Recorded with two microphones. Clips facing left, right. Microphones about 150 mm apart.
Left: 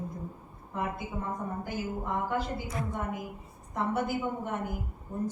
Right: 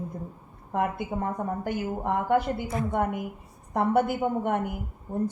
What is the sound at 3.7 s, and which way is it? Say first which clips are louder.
A woman's voice: right 6 dB; 60° right (ahead or behind).